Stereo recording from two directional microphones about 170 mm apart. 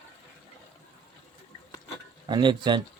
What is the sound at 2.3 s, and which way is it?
Speech, 25° right (ahead or behind).